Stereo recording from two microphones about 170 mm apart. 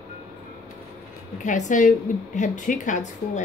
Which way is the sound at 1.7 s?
50° left (ahead or behind).